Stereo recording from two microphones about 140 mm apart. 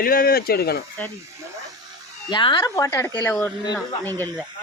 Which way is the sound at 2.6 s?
20° left (ahead or behind).